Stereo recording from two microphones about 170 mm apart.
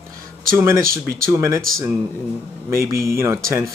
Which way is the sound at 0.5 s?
15° right (ahead or behind).